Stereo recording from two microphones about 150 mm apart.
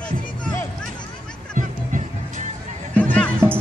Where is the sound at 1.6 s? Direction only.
55° right (ahead or behind).